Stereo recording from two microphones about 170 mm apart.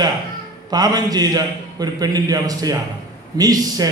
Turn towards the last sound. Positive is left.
turn(degrees=-20)  # may be behind; listen again after turning